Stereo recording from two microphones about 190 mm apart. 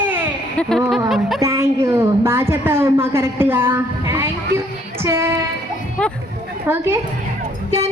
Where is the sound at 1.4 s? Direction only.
15° right (ahead or behind).